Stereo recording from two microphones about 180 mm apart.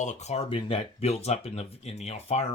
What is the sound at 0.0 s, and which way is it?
Speech, 40° left (ahead or behind).